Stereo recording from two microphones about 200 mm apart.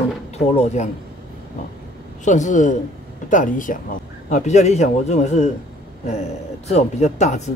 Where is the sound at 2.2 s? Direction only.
40° left (ahead or behind).